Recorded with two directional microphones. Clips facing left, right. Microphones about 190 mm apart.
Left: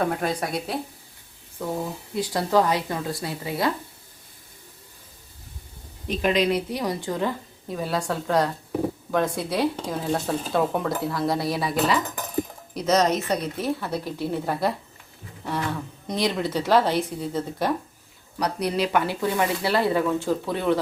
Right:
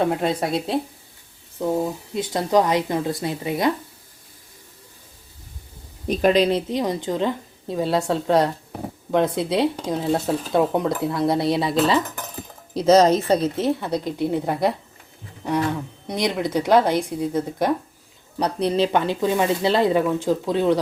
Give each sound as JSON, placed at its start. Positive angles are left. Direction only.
{"t": 0.0, "sound": "speech", "side_deg": -25}
{"t": 2.1, "sound": "speech", "side_deg": -20}
{"t": 6.1, "sound": "speech", "side_deg": -35}
{"t": 16.0, "sound": "speech", "side_deg": -15}
{"t": 18.3, "sound": "speech", "side_deg": -25}